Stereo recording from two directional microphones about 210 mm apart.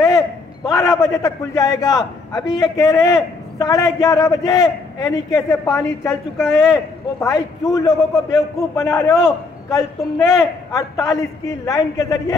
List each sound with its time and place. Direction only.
0.7 s a man's voice: 15° left (ahead or behind)